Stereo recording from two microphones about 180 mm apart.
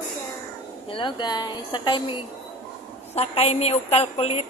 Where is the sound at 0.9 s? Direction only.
25° left (ahead or behind).